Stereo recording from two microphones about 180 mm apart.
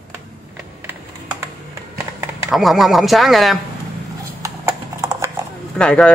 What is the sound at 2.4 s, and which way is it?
Speech, centre (ahead or behind).